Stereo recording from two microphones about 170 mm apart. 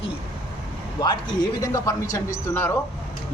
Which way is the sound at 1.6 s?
20° left (ahead or behind).